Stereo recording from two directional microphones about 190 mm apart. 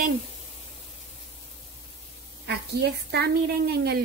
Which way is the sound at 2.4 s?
60° right (ahead or behind).